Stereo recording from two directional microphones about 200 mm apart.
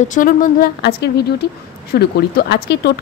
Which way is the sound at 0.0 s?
40° left (ahead or behind).